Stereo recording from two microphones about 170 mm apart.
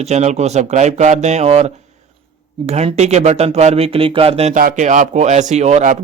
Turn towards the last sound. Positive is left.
turn(degrees=-45)  # may be behind; listen again after turning